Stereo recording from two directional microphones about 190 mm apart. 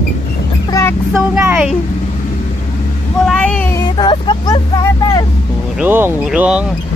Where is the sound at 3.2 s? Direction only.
5° left (ahead or behind).